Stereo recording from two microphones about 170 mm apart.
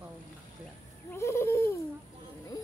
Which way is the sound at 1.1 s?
15° left (ahead or behind).